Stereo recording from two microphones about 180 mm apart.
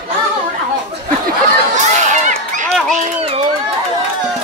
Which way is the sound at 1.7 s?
40° right (ahead or behind).